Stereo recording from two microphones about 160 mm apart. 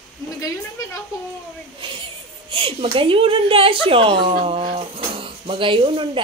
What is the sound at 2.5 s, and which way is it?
A woman's voice, 35° right (ahead or behind).